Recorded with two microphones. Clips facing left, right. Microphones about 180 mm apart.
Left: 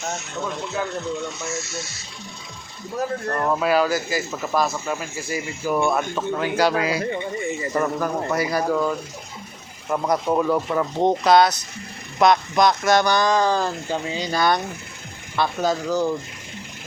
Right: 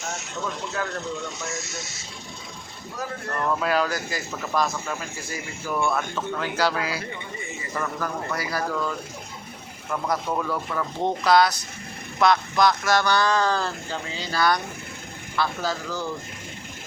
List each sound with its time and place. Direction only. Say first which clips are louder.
3.2 s speech: left 1 dB; 35° left (ahead or behind)
3.6 s speech: left 4 dB; 5° left (ahead or behind)
9.9 s speech: left 5 dB; 25° left (ahead or behind)